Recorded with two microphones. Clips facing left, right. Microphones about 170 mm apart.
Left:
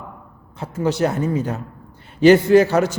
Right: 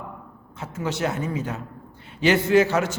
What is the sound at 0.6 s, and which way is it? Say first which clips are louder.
A man's voice: left 7 dB; 35° left (ahead or behind).